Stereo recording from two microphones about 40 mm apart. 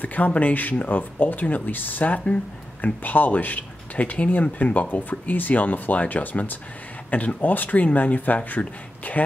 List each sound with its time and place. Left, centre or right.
0.0 s speech: left